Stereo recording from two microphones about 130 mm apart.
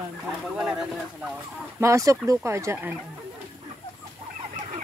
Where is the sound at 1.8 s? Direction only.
25° right (ahead or behind).